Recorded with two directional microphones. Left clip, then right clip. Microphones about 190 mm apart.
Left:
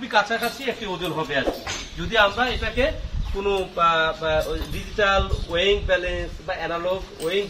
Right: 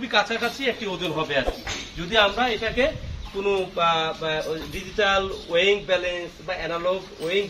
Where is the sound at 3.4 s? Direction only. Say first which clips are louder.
Left 1 dB; 10° right (ahead or behind).